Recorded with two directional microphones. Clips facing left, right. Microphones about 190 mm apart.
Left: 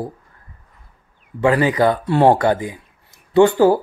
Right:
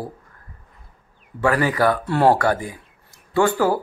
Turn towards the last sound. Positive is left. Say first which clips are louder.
# left 6 dB
turn(degrees=25)  # may be behind; listen again after turning